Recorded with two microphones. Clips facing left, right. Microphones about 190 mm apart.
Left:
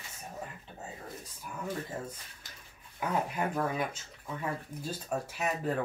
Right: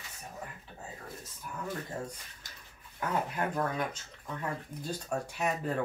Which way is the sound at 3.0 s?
10° left (ahead or behind).